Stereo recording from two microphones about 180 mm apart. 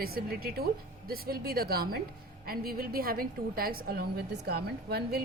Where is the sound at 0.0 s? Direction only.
60° right (ahead or behind).